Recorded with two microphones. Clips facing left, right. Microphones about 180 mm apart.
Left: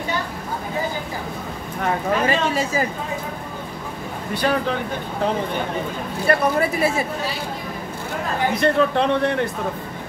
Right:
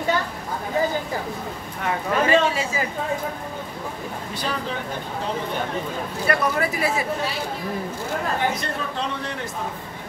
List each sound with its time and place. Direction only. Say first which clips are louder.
1.9 s speech: even; 40° left (ahead or behind)
4.3 s a man's voice: left 9 dB; 65° left (ahead or behind)
6.2 s speech: left 4 dB; 25° left (ahead or behind)
8.5 s a man's voice: left 11 dB; 65° left (ahead or behind)